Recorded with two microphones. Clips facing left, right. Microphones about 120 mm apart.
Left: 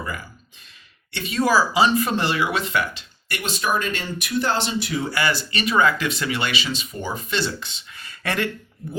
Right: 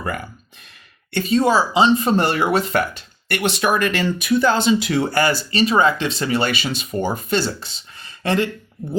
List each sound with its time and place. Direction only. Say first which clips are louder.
0.0 s speech: right 5 dB; 60° right (ahead or behind)
1.1 s speech: right 4 dB; 35° right (ahead or behind)
2.1 s speech: right 5 dB; 45° right (ahead or behind); by 5.0 s 80° right
5.0 s speech: right 5 dB; 45° right (ahead or behind); by 8.4 s 25° right (ahead or behind)